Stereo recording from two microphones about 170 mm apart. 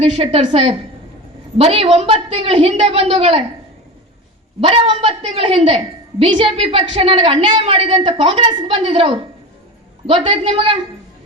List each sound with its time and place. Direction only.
0.2 s a woman's voice: 35° right (ahead or behind)
4.6 s a woman's voice: 30° right (ahead or behind)